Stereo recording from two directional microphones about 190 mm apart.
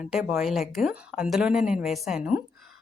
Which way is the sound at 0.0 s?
5° right (ahead or behind).